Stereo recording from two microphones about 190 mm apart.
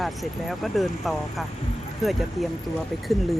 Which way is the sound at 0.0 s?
Centre (ahead or behind).